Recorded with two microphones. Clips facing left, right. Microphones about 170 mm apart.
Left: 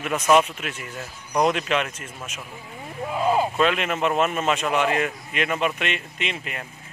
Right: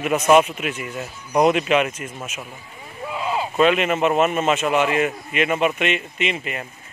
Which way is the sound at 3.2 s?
45° left (ahead or behind).